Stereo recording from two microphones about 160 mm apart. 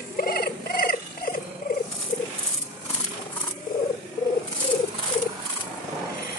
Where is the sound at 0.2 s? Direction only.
70° left (ahead or behind).